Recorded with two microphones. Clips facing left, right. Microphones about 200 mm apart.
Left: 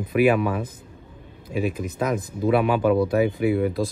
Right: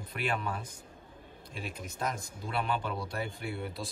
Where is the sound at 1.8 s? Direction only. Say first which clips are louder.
Left 11 dB; centre (ahead or behind).